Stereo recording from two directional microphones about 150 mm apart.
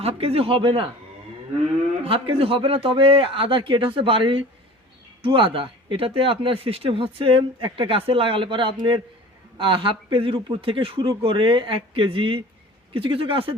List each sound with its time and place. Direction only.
0.0 s speech: 40° right (ahead or behind)
2.0 s speech: 35° right (ahead or behind)